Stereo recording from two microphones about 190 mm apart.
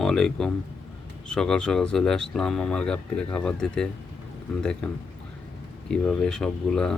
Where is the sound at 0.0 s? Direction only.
Centre (ahead or behind).